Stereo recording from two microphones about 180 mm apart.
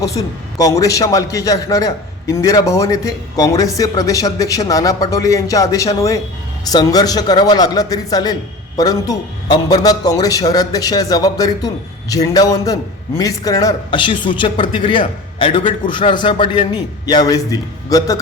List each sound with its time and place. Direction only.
0.0 s a man's voice: 20° left (ahead or behind)